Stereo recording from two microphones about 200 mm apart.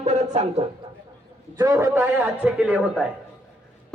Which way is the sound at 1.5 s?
20° right (ahead or behind).